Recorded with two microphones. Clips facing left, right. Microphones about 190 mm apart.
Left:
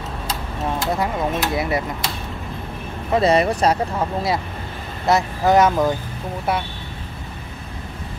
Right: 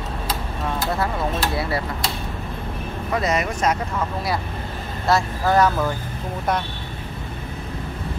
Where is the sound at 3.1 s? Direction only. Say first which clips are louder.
Left 6 dB; 30° left (ahead or behind).